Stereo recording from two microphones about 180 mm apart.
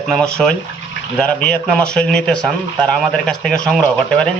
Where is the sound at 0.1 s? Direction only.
5° left (ahead or behind).